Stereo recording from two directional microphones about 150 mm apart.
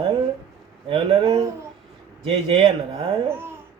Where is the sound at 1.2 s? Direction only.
20° right (ahead or behind).